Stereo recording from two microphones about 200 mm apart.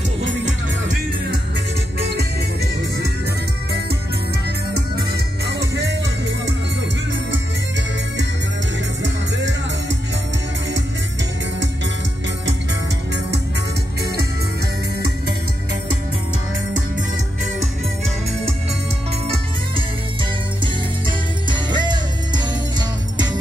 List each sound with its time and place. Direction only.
2.1 s music: 55° right (ahead or behind)
5.1 s music: 55° right (ahead or behind)
9.0 s music: 65° right (ahead or behind)
21.5 s music: 20° right (ahead or behind)